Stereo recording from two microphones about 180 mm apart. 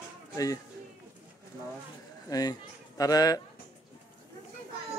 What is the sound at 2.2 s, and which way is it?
A man's voice, 20° left (ahead or behind).